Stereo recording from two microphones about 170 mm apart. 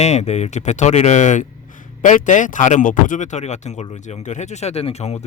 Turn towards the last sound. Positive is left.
turn(degrees=35)  # may be behind; listen again after turning